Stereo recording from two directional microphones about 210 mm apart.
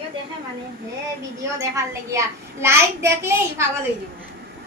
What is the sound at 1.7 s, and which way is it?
A child's voice, 15° right (ahead or behind).